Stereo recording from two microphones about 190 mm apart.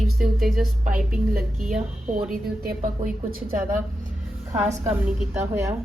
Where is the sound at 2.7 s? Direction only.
45° right (ahead or behind).